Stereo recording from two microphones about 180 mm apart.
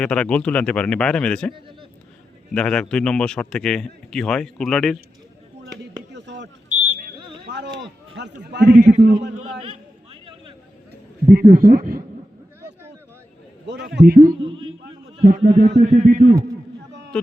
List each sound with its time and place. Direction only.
0.0 s a man's voice: 5° left (ahead or behind)
2.6 s a man's voice: 5° left (ahead or behind)
6.1 s a sound: 75° right (ahead or behind)
8.1 s a man's voice: 70° right (ahead or behind)
11.3 s speech: 55° right (ahead or behind)
13.7 s a man's voice: 70° right (ahead or behind)
14.3 s a man's voice: 25° right (ahead or behind)
15.2 s a man's voice: 45° right (ahead or behind)